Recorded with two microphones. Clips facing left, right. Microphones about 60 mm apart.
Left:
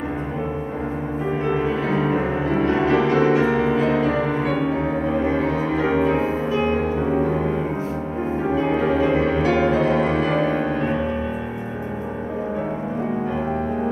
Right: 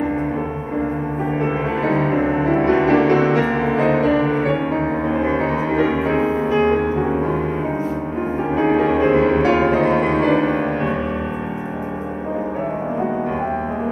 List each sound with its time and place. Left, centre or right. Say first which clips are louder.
1.9 s music: right 3 dB; right
2.6 s music: right 2 dB; right
8.5 s music: right 4 dB; right